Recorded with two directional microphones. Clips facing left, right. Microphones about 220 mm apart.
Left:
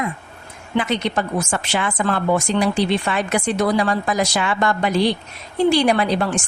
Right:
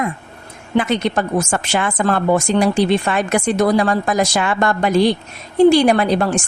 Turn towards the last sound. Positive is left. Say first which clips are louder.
# right 3 dB
turn(degrees=-45)  # may be behind; listen again after turning